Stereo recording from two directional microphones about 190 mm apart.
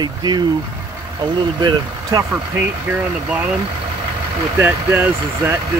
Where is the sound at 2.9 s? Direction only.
10° right (ahead or behind).